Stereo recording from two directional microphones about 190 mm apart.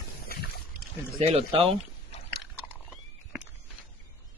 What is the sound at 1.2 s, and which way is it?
Speech, 30° right (ahead or behind).